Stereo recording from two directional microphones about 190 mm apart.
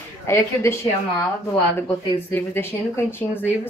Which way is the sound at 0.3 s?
15° left (ahead or behind).